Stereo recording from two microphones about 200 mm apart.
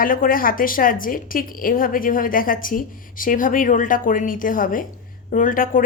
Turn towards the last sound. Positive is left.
turn(degrees=45)  # may be behind; listen again after turning